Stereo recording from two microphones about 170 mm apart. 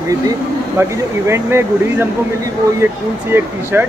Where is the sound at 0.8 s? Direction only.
15° right (ahead or behind).